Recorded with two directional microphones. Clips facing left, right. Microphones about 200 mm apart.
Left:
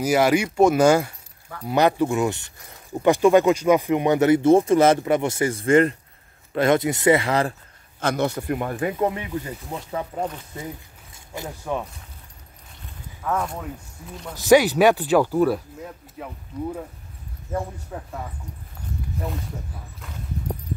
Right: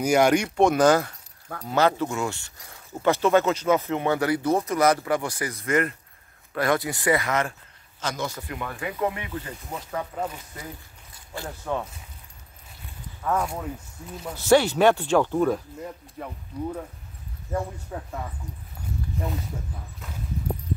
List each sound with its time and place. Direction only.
0.0 s speech: 5° left (ahead or behind); by 7.5 s 30° left (ahead or behind)
8.0 s a man's voice: 60° left (ahead or behind)
8.4 s speech: 45° left (ahead or behind)
8.9 s speech: 30° left (ahead or behind)
9.3 s speech: 15° left (ahead or behind)
11.4 s speech: 10° left (ahead or behind)
13.2 s speech: 5° right (ahead or behind)
14.0 s speech: 5° left (ahead or behind)
17.9 s speech: centre (ahead or behind)